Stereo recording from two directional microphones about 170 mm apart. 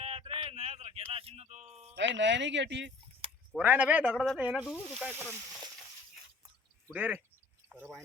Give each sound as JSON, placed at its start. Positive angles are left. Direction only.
{"t": 0.0, "sound": "a sound", "side_deg": -35}
{"t": 2.0, "sound": "speech", "side_deg": -90}
{"t": 3.6, "sound": "speech", "side_deg": -10}
{"t": 6.9, "sound": "speech", "side_deg": -10}